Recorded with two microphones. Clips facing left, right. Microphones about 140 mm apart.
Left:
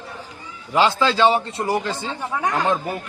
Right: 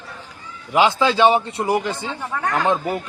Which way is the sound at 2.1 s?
15° left (ahead or behind).